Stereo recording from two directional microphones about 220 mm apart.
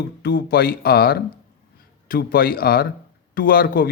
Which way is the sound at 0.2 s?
45° left (ahead or behind).